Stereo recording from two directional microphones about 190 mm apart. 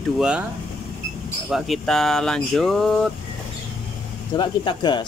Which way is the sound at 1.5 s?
Centre (ahead or behind).